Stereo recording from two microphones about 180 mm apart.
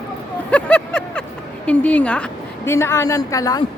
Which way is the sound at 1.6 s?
5° left (ahead or behind).